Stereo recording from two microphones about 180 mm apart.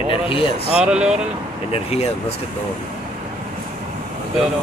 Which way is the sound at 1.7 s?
35° left (ahead or behind).